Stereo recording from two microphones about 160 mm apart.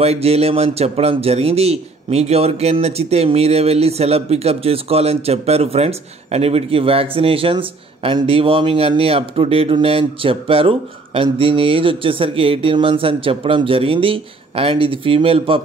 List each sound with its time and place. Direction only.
0.0 s speech: 40° right (ahead or behind)